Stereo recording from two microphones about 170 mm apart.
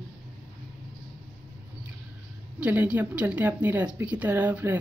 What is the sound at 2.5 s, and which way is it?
Speech, 10° right (ahead or behind).